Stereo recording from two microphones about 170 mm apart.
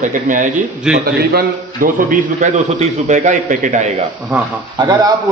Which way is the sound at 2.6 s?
40° right (ahead or behind).